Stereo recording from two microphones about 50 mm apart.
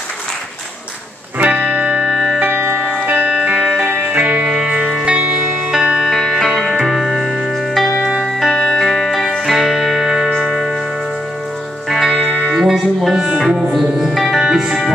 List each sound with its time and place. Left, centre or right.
1.4 s music: right
2.0 s music: centre
2.4 s music: right
3.3 s music: centre
4.5 s music: centre
5.0 s music: right
6.2 s music: centre
6.5 s music: centre
8.2 s music: centre
8.5 s music: centre
11.9 s music: centre
13.7 s music: centre